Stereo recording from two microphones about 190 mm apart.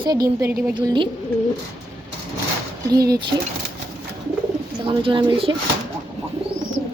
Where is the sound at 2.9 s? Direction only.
20° right (ahead or behind).